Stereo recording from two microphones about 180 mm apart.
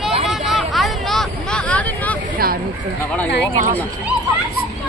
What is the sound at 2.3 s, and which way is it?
Speech, 55° right (ahead or behind).